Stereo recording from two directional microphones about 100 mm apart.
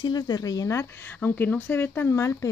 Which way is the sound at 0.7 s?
20° left (ahead or behind).